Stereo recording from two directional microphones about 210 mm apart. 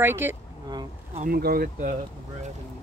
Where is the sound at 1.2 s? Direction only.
45° right (ahead or behind).